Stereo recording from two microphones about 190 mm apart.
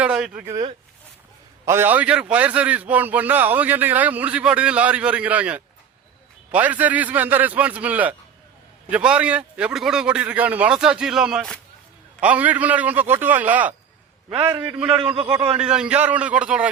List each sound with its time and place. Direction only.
0.0 s a man's voice: 5° right (ahead or behind)
14.3 s a man's voice: 20° right (ahead or behind)
15.5 s a man's voice: 5° right (ahead or behind)